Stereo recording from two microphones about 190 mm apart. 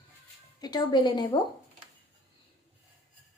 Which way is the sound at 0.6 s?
20° left (ahead or behind).